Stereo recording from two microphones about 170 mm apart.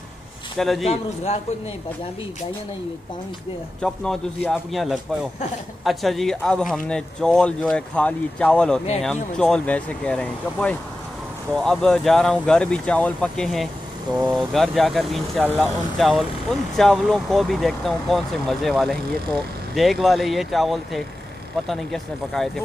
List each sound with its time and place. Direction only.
0.6 s speech: centre (ahead or behind)
0.8 s speech: 40° left (ahead or behind)
3.8 s speech: 5° left (ahead or behind)